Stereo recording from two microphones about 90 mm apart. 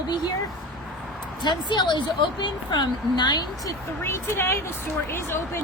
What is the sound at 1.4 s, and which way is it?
Speech, 55° left (ahead or behind).